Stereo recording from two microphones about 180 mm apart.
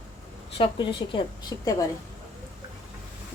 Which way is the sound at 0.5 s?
30° left (ahead or behind).